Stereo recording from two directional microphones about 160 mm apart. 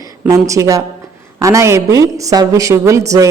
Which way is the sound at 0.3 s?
20° right (ahead or behind).